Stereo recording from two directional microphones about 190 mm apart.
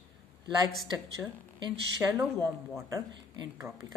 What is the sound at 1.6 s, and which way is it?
Speech, 20° right (ahead or behind).